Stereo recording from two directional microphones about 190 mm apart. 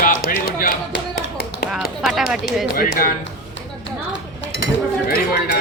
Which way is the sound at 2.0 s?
Centre (ahead or behind).